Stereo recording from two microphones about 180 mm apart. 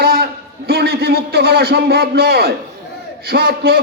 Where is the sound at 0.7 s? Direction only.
60° right (ahead or behind).